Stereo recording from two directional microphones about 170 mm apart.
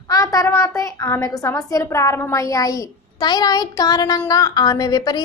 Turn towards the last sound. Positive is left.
turn(degrees=25)  # may be behind; listen again after turning